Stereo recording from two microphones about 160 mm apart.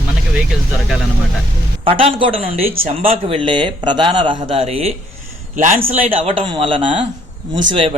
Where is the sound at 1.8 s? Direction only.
35° right (ahead or behind).